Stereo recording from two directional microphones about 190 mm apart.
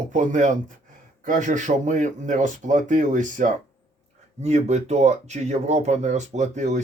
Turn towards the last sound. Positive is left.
turn(degrees=-35)  # may be behind; listen again after turning